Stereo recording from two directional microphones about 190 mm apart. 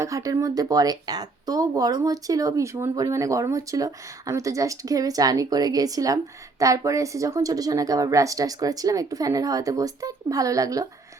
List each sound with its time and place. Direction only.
0.0 s a woman's voice: 15° right (ahead or behind)